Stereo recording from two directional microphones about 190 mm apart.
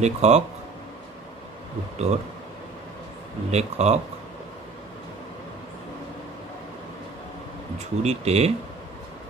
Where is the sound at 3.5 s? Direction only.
35° right (ahead or behind).